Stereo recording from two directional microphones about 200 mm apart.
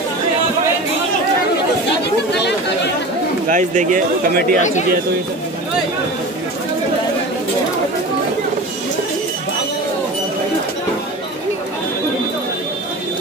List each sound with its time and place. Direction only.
3.4 s speech: 40° right (ahead or behind)